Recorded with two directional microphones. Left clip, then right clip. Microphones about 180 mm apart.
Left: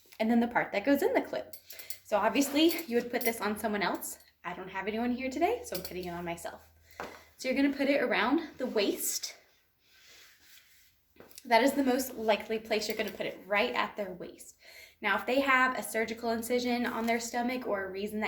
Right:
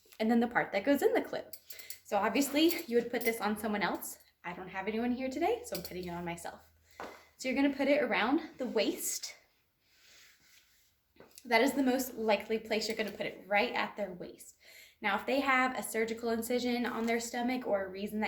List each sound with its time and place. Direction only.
0.1 s a woman's voice: 10° right (ahead or behind)
11.3 s speech: 10° right (ahead or behind)